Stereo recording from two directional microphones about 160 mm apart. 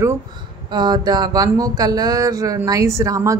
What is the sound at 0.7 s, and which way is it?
A woman's voice, 25° right (ahead or behind).